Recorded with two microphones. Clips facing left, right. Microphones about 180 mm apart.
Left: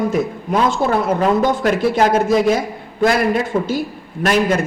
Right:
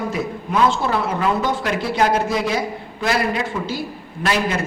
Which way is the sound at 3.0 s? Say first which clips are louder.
Left 5 dB; 45° left (ahead or behind).